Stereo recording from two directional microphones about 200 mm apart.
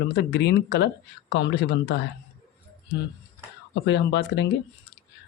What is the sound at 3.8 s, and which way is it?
Speech, 60° left (ahead or behind).